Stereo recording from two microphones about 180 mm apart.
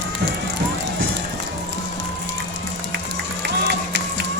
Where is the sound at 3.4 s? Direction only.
70° right (ahead or behind).